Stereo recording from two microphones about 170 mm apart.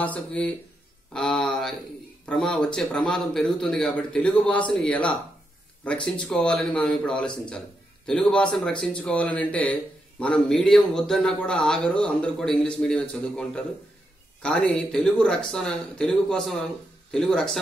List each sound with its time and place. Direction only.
0.0 s speech: 10° left (ahead or behind)
1.1 s a sound: 5° left (ahead or behind)
2.2 s speech: 5° left (ahead or behind)